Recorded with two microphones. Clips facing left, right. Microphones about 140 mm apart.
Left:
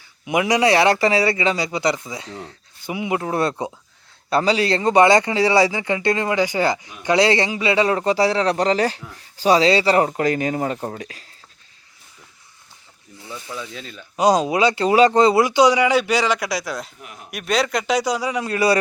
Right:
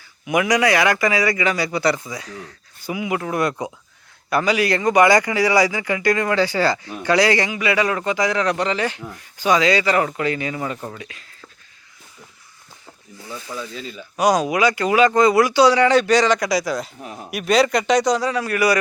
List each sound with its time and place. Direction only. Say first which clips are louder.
0.3 s speech: even; 25° left (ahead or behind)
13.5 s speech: right 2 dB; centre (ahead or behind)
14.2 s speech: left 1 dB; 25° left (ahead or behind); by 16.9 s centre (ahead or behind)
17.0 s speech: right 6 dB; 30° right (ahead or behind)
17.3 s a man's voice: right 4 dB; centre (ahead or behind); by 18.8 s 25° left (ahead or behind)